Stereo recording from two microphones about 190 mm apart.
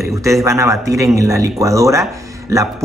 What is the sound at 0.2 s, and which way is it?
Speech, 15° right (ahead or behind).